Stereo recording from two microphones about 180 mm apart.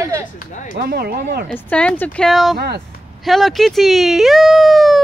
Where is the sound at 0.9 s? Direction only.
60° right (ahead or behind).